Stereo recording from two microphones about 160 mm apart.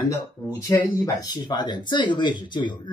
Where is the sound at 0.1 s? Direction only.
20° left (ahead or behind).